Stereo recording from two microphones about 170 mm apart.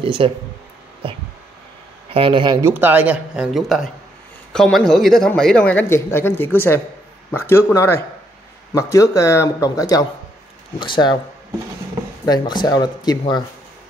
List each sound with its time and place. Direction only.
0.0 s speech: 30° right (ahead or behind)
2.0 s speech: 30° right (ahead or behind)
2.7 s speech: 10° right (ahead or behind); by 11.1 s 25° left (ahead or behind)
12.3 s speech: 25° left (ahead or behind)